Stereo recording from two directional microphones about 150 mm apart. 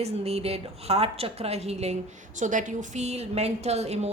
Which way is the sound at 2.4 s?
55° right (ahead or behind).